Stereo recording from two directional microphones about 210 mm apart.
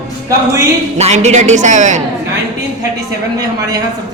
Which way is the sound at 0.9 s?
30° right (ahead or behind).